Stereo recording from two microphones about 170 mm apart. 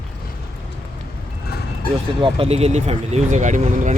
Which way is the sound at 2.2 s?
35° right (ahead or behind).